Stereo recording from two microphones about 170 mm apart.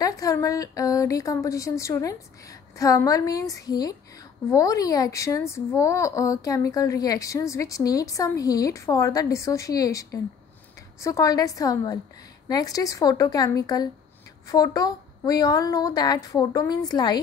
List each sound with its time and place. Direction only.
0.0 s speech: 20° left (ahead or behind)